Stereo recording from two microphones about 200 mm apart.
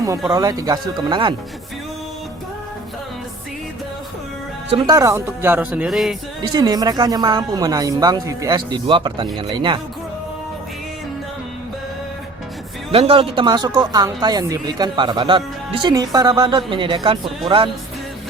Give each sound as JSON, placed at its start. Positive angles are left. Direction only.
{"t": 0.3, "sound": "speech", "side_deg": -15}
{"t": 4.9, "sound": "speech", "side_deg": -15}
{"t": 6.4, "sound": "speech", "side_deg": -20}
{"t": 12.9, "sound": "speech", "side_deg": -30}